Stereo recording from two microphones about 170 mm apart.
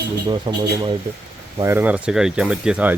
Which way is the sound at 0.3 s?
25° right (ahead or behind).